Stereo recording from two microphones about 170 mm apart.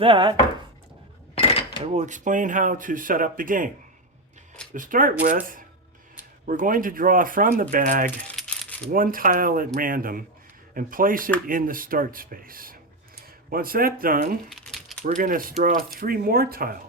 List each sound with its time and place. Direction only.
0.0 s chopping: 30° right (ahead or behind)
1.4 s cutlery: 35° left (ahead or behind)
1.8 s speech: 45° right (ahead or behind)
4.7 s speech: 50° right (ahead or behind)
8.3 s rattle: 5° left (ahead or behind)
8.9 s speech: 55° right (ahead or behind)
14.5 s mechanisms: centre (ahead or behind)
15.0 s speech: 55° right (ahead or behind)